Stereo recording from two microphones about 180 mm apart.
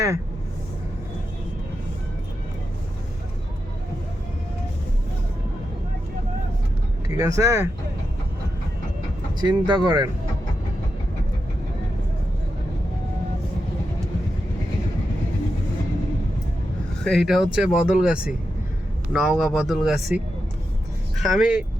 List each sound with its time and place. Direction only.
7.1 s speech: 20° right (ahead or behind)
9.4 s speech: 25° right (ahead or behind)
17.0 s speech: centre (ahead or behind)